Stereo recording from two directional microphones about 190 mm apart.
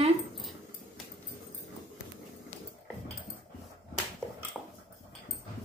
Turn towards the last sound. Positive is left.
turn(degrees=5)  # may be behind; listen again after turning